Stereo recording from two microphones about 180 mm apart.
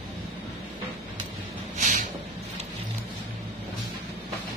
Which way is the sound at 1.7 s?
45° right (ahead or behind).